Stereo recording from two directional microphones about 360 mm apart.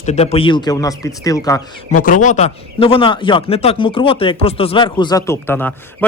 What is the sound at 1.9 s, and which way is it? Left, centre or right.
A man's voice, left.